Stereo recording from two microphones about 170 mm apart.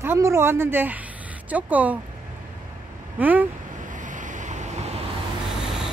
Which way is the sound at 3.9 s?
50° right (ahead or behind).